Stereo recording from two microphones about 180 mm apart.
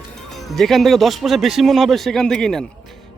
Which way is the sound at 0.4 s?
Centre (ahead or behind).